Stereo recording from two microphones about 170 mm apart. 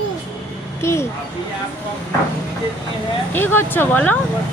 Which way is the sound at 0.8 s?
15° left (ahead or behind).